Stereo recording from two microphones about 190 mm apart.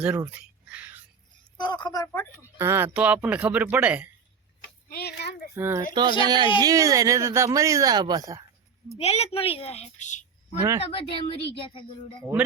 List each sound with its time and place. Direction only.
0.0 s a sound: 10° right (ahead or behind)
1.5 s speech: 25° left (ahead or behind)
2.6 s speech: 10° right (ahead or behind)
4.9 s a sound: 55° left (ahead or behind)
5.5 s speech: 10° right (ahead or behind)
6.2 s speech: 25° right (ahead or behind)
9.0 s a woman's voice: 35° left (ahead or behind)